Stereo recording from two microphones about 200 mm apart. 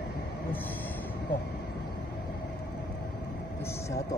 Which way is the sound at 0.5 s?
10° left (ahead or behind).